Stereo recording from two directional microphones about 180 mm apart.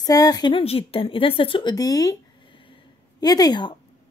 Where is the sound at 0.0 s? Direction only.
20° left (ahead or behind).